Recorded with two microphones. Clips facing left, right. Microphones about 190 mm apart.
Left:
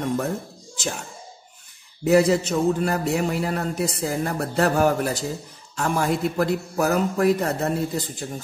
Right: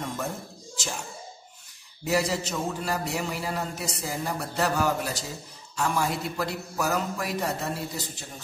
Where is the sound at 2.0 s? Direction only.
55° left (ahead or behind).